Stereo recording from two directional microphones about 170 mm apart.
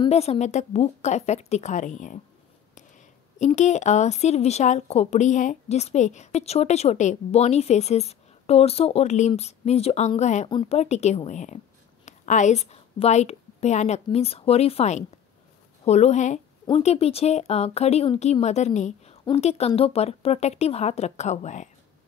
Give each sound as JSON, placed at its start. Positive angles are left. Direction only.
{"t": 0.0, "sound": "speech", "side_deg": 40}
{"t": 3.3, "sound": "a woman's voice", "side_deg": 45}